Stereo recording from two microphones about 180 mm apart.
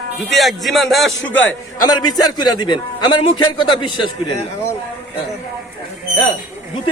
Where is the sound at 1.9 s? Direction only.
25° left (ahead or behind).